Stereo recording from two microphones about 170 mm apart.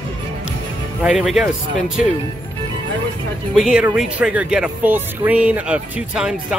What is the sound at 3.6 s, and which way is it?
Speech, 5° right (ahead or behind).